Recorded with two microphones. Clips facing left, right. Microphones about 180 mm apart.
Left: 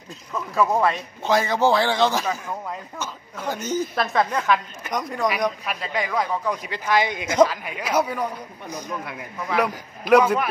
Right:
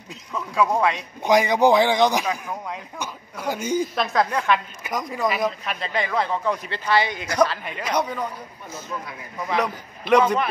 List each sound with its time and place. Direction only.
0.3 s a woman's voice: centre (ahead or behind)
1.2 s speech: 15° right (ahead or behind)
3.9 s a woman's voice: centre (ahead or behind)